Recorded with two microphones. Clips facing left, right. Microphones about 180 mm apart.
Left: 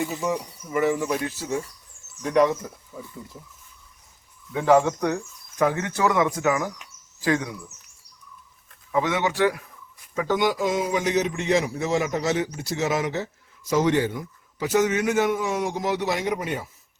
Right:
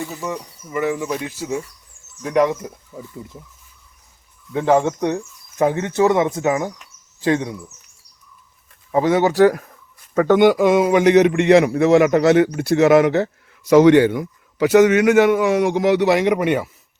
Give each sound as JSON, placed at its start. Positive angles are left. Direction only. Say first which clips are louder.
{"t": 0.0, "sound": "speech", "louder": "left 1 dB", "side_deg": 5}
{"t": 4.5, "sound": "speech", "louder": "right 2 dB", "side_deg": -20}
{"t": 8.9, "sound": "speech", "louder": "right 7 dB", "side_deg": -35}
{"t": 10.2, "sound": "a man's voice", "louder": "right 10 dB", "side_deg": -60}